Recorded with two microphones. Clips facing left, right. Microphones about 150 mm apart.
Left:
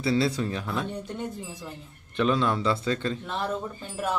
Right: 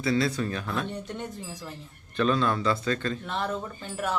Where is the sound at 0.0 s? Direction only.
25° left (ahead or behind); by 1.7 s 10° left (ahead or behind).